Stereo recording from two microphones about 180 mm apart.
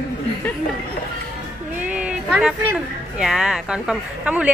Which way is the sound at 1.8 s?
5° right (ahead or behind).